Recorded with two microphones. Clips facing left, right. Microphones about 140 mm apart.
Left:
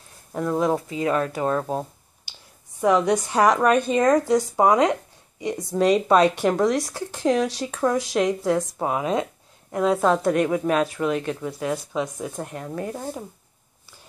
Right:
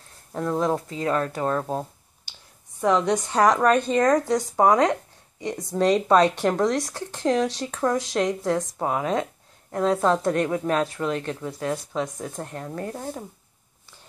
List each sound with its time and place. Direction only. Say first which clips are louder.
0.3 s speech: left 2 dB; 10° left (ahead or behind)
4.6 s speech: right 1 dB; 15° left (ahead or behind)